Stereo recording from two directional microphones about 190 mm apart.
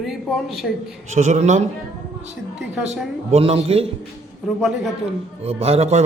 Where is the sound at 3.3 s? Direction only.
30° right (ahead or behind).